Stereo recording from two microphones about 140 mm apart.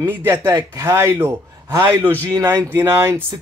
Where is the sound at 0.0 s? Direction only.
15° right (ahead or behind).